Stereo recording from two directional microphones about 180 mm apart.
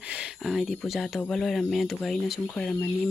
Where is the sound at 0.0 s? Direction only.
5° right (ahead or behind).